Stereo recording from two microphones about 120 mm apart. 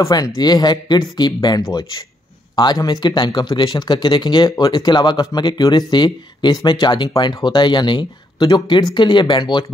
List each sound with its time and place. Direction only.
0.0 s speech: 35° left (ahead or behind)